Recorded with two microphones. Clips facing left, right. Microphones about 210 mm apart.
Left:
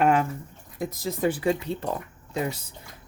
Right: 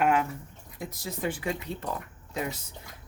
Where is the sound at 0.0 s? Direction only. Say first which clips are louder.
Left 3 dB; 35° left (ahead or behind).